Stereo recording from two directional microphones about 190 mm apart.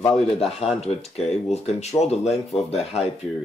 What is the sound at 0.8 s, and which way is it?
Speech, 35° left (ahead or behind).